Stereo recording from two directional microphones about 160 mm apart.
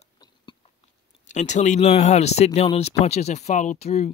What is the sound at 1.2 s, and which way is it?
Speech, 50° left (ahead or behind).